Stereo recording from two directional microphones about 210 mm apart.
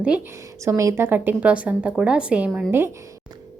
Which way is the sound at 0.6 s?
15° right (ahead or behind).